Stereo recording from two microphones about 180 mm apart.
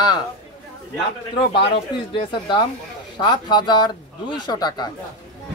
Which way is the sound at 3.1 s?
25° left (ahead or behind).